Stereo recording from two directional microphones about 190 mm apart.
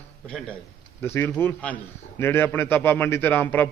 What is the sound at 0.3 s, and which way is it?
A man's voice, 5° left (ahead or behind).